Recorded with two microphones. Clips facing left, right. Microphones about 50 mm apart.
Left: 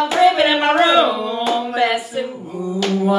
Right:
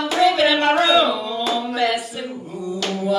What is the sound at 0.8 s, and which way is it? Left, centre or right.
Music, left.